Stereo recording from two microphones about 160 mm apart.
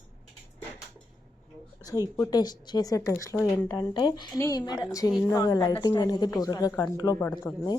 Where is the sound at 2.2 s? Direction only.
25° left (ahead or behind).